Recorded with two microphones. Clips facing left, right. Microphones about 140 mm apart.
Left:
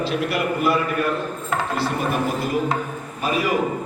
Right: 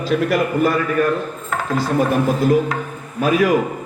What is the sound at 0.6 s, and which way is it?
Speech, 90° right.